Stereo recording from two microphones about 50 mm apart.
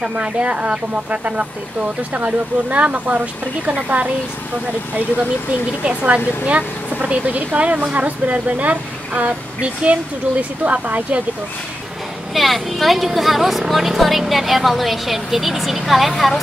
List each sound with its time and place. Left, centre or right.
0.0 s speech: right
5.9 s speech: right
12.4 s a woman's voice: centre